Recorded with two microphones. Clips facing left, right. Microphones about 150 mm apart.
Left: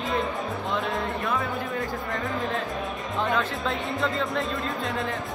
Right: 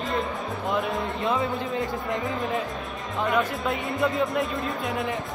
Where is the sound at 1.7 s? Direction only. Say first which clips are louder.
Right 2 dB; 20° right (ahead or behind).